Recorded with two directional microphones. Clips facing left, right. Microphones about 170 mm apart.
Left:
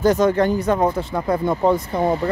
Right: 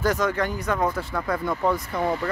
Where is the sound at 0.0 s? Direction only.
25° left (ahead or behind).